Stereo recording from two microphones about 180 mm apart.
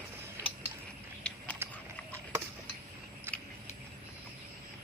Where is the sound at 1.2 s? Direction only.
5° left (ahead or behind).